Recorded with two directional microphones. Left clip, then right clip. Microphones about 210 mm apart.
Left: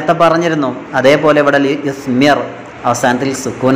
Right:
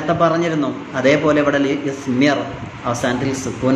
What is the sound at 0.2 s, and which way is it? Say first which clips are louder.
A man's voice: left 4 dB; 15° left (ahead or behind).